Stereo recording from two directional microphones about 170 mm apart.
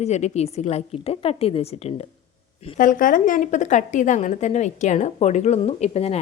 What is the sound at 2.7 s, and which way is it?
A woman's voice, 55° left (ahead or behind).